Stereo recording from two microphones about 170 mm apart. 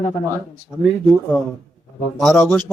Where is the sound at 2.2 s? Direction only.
Centre (ahead or behind).